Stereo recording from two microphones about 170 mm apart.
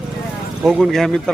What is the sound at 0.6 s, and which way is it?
Speech, 5° right (ahead or behind).